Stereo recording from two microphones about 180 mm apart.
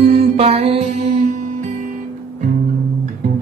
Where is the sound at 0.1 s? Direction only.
35° right (ahead or behind).